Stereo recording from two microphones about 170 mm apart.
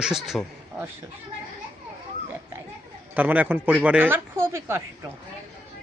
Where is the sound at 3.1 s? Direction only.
10° right (ahead or behind).